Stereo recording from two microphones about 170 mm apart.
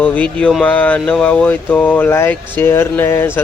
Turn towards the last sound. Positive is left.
turn(degrees=15)  # may be behind; listen again after turning